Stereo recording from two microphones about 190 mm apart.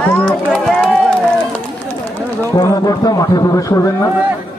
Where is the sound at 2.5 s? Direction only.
20° left (ahead or behind).